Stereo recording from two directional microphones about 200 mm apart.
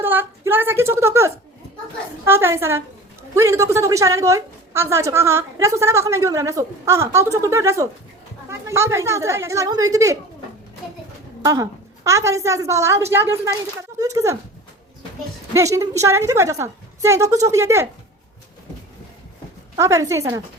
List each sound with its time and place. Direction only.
0.0 s a woman's voice: 10° right (ahead or behind)
11.4 s a woman's voice: 15° right (ahead or behind)
15.5 s a woman's voice: 15° right (ahead or behind)
19.7 s a woman's voice: 15° right (ahead or behind)